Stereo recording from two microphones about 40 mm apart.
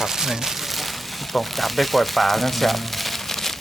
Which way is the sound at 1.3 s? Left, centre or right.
Centre.